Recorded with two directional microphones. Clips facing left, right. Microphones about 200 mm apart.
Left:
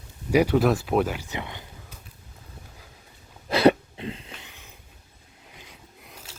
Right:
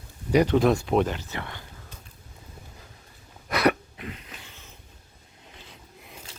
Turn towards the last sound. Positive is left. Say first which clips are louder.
# right 1 dB
turn(degrees=5)  # may be behind; listen again after turning